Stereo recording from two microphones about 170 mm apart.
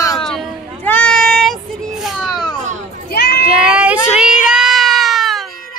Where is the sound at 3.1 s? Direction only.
70° left (ahead or behind).